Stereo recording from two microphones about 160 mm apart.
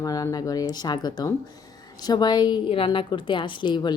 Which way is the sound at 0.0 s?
20° left (ahead or behind).